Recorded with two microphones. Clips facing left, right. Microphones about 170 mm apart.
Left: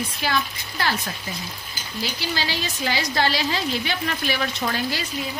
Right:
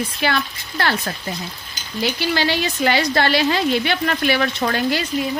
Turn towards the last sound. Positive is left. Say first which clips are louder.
# right 6 dB
turn(degrees=-65)  # may be behind; listen again after turning